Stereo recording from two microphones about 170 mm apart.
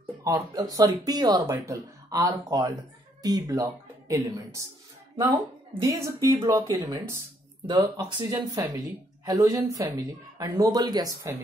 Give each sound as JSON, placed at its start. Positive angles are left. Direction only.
{"t": 0.2, "sound": "speech", "side_deg": -20}
{"t": 5.8, "sound": "speech", "side_deg": -20}